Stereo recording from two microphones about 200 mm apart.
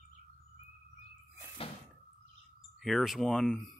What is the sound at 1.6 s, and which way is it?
Door, 30° left (ahead or behind).